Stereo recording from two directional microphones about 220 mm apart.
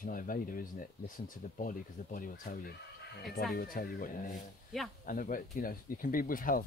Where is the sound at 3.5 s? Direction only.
40° left (ahead or behind).